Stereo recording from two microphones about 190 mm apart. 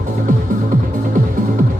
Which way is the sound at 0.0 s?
45° right (ahead or behind).